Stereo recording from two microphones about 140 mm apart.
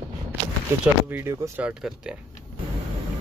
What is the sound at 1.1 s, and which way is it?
Speech, 15° right (ahead or behind).